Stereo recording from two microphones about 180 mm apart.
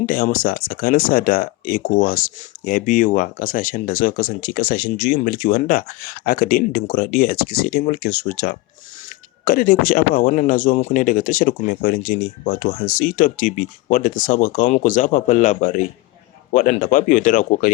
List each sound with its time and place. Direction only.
0.0 s speech: 50° left (ahead or behind)